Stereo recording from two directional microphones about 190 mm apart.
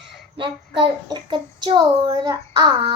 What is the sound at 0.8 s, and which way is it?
A child's voice, 25° right (ahead or behind).